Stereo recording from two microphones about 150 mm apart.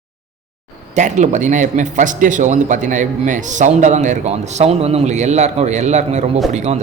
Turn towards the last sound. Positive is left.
turn(degrees=-50)  # may be behind; listen again after turning